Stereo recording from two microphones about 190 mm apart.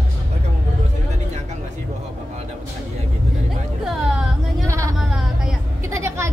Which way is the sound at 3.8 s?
Centre (ahead or behind).